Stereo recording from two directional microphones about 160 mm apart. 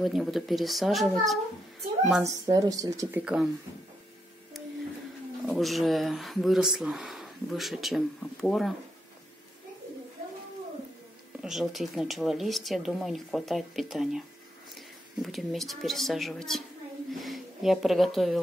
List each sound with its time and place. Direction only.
0.0 s speech: centre (ahead or behind)
2.2 s speech: 25° right (ahead or behind)
5.5 s speech: centre (ahead or behind)
11.4 s speech: centre (ahead or behind)